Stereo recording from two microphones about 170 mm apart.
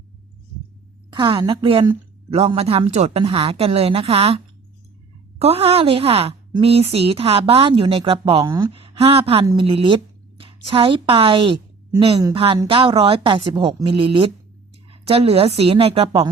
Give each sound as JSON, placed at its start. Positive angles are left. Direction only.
{"t": 1.1, "sound": "speech", "side_deg": -25}
{"t": 5.4, "sound": "speech", "side_deg": -35}
{"t": 8.7, "sound": "a woman's voice", "side_deg": -35}